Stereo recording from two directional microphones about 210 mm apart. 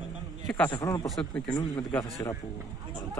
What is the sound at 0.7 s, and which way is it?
Speech, 15° left (ahead or behind).